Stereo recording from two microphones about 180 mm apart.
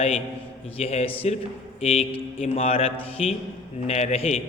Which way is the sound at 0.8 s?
35° left (ahead or behind).